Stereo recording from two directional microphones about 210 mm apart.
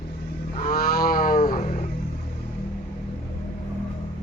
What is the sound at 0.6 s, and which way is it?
Cattle, 40° left (ahead or behind).